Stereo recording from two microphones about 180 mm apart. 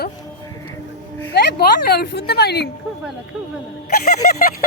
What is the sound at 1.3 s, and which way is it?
Speech, 60° left (ahead or behind).